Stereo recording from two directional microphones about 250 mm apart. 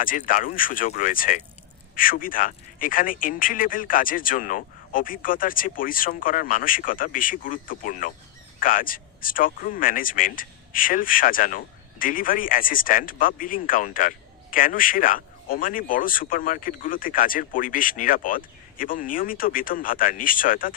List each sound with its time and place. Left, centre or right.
0.0 s speech: left